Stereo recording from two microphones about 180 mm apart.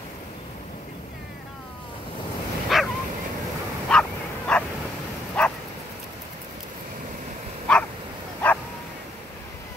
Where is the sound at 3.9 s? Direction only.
5° left (ahead or behind).